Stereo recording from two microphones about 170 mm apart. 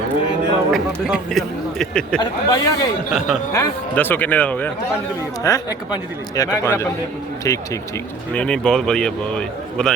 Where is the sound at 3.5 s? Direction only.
15° left (ahead or behind).